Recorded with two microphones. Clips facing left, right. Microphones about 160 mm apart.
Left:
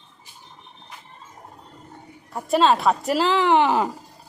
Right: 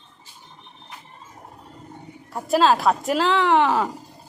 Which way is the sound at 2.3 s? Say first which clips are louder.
Even; centre (ahead or behind).